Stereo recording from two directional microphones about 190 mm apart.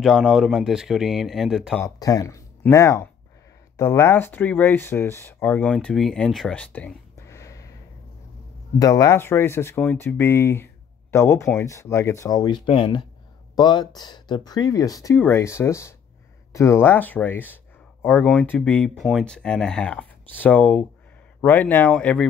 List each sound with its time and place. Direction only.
0.0 s speech: 5° right (ahead or behind)
1.8 s speech: 20° left (ahead or behind)
8.7 s speech: 20° left (ahead or behind)